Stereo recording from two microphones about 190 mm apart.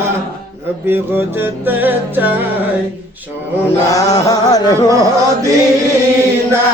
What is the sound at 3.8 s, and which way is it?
Music, 20° left (ahead or behind).